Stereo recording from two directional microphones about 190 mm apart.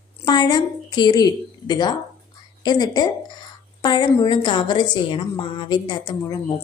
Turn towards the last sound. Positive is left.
turn(degrees=20)  # may be behind; listen again after turning